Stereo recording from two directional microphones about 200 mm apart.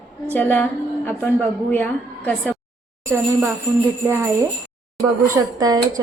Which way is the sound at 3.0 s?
15° right (ahead or behind).